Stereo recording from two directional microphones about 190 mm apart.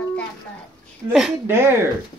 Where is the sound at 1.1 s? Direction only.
5° right (ahead or behind).